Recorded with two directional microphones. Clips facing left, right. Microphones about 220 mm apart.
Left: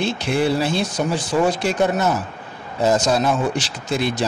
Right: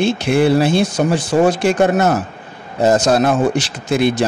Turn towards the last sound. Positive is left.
turn(degrees=-60)  # may be behind; listen again after turning